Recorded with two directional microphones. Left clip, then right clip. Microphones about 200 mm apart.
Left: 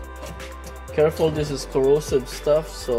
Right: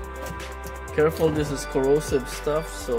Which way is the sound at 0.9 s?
15° left (ahead or behind).